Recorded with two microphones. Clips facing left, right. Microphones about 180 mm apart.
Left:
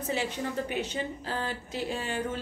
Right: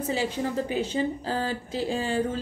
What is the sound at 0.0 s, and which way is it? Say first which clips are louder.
A woman's voice: right 4 dB; 30° right (ahead or behind).